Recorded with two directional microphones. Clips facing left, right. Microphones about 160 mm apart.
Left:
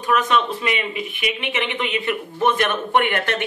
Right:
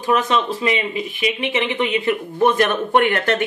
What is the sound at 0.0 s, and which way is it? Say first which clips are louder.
A man's voice: right 1 dB; 30° right (ahead or behind).